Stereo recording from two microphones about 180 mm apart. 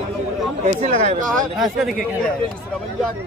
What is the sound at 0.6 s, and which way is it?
Speech, 35° right (ahead or behind).